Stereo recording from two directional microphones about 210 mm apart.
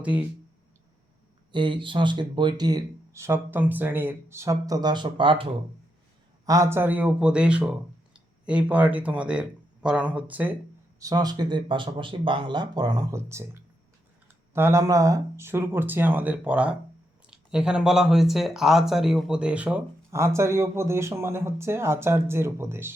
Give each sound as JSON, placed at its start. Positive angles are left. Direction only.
{"t": 0.0, "sound": "speech", "side_deg": -5}
{"t": 1.5, "sound": "speech", "side_deg": -25}
{"t": 11.0, "sound": "speech", "side_deg": -20}